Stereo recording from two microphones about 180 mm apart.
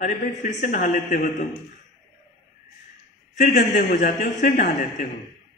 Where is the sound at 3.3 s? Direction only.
40° left (ahead or behind).